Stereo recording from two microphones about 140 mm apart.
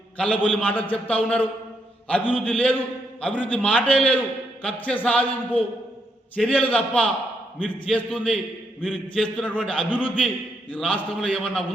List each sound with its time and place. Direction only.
0.2 s a man's voice: 10° left (ahead or behind)
6.3 s a man's voice: 10° left (ahead or behind)